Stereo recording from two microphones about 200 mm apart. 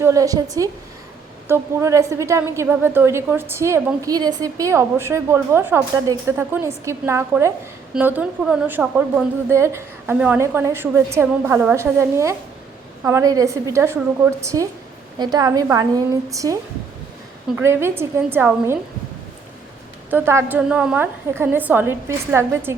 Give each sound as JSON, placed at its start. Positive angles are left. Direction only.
{"t": 0.0, "sound": "a woman's voice", "side_deg": -15}
{"t": 17.6, "sound": "a woman's voice", "side_deg": -10}
{"t": 20.1, "sound": "a woman's voice", "side_deg": -10}